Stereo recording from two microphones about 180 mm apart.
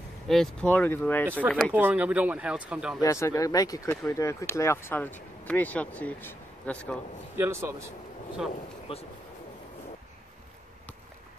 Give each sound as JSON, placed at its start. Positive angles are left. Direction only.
{"t": 0.3, "sound": "speech", "side_deg": 5}
{"t": 1.7, "sound": "speech", "side_deg": -10}
{"t": 3.0, "sound": "speech", "side_deg": 15}
{"t": 7.3, "sound": "speech", "side_deg": -15}
{"t": 8.9, "sound": "speech", "side_deg": 30}